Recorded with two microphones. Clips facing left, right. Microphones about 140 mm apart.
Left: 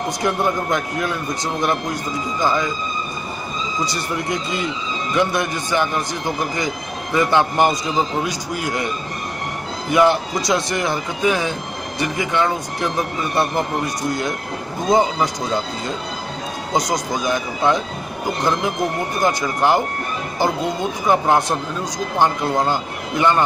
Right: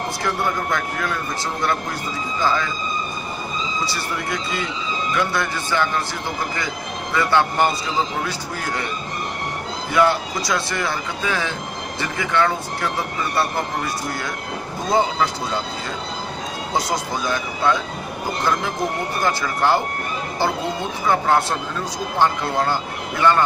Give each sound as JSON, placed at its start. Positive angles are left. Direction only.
{"t": 0.2, "sound": "speech", "side_deg": 20}
{"t": 2.4, "sound": "a man's voice", "side_deg": 15}
{"t": 3.8, "sound": "a man's voice", "side_deg": 20}
{"t": 9.9, "sound": "a man's voice", "side_deg": 20}
{"t": 16.7, "sound": "a man's voice", "side_deg": 15}
{"t": 19.2, "sound": "a man's voice", "side_deg": 15}
{"t": 21.0, "sound": "a man's voice", "side_deg": 15}